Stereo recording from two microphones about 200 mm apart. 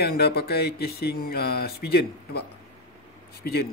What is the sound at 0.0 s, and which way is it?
Speech, 50° left (ahead or behind).